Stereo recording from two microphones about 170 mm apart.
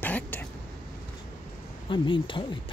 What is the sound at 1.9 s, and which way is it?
Speech, 30° left (ahead or behind).